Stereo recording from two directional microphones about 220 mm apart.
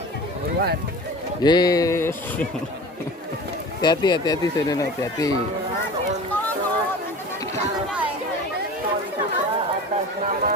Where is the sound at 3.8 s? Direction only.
20° left (ahead or behind).